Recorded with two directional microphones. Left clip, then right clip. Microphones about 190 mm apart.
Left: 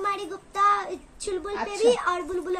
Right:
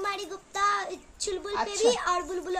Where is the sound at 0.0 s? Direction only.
10° right (ahead or behind).